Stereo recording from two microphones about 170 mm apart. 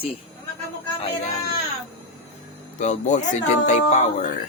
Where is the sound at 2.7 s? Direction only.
45° left (ahead or behind).